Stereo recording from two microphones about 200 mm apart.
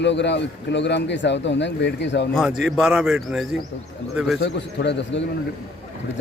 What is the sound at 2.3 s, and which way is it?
Speech, centre (ahead or behind).